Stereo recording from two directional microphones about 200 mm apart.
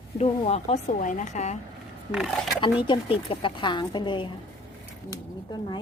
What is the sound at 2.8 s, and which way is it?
A woman's voice, 25° left (ahead or behind).